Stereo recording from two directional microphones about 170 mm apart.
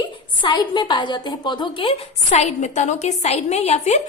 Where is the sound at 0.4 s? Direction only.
25° left (ahead or behind).